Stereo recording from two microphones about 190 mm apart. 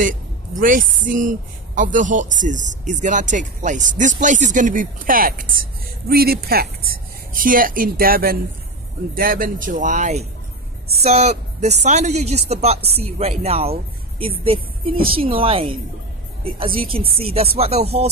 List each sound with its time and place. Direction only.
0.6 s a woman's voice: 45° right (ahead or behind)